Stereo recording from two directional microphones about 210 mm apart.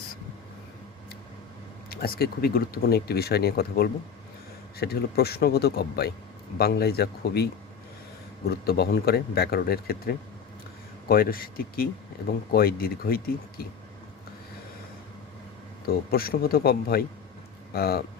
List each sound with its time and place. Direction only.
1.9 s speech: 45° left (ahead or behind)
15.9 s speech: 45° left (ahead or behind)